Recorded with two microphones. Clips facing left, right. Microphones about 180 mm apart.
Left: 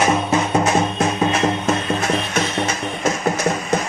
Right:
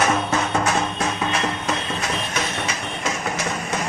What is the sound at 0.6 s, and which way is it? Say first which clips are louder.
Music: left 5 dB; 25° left (ahead or behind).